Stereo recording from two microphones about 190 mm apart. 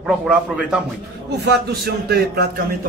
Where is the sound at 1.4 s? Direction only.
60° right (ahead or behind).